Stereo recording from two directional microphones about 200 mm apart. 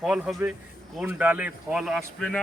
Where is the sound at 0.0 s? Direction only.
5° right (ahead or behind).